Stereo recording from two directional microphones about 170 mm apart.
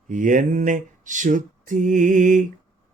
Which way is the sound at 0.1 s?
50° right (ahead or behind).